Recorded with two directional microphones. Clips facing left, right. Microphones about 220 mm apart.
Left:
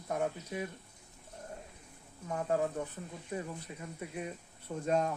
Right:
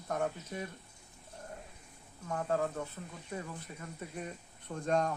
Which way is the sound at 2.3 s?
15° left (ahead or behind).